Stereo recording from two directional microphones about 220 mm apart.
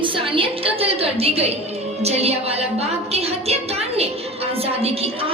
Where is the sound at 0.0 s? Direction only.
25° right (ahead or behind).